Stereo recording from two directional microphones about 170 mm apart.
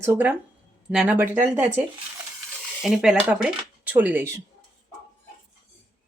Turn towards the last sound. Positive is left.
turn(degrees=-10)  # may be behind; listen again after turning